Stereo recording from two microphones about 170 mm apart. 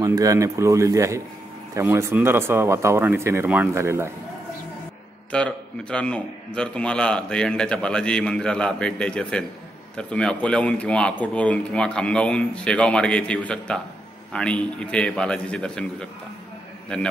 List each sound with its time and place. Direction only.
0.0 s speech: 20° right (ahead or behind)
5.3 s a man's voice: 5° left (ahead or behind)